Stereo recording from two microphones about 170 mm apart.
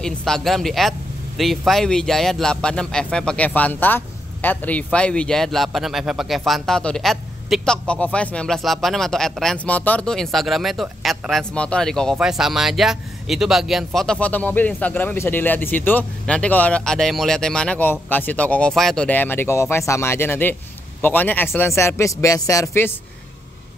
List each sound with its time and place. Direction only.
0.0 s speech: 5° left (ahead or behind)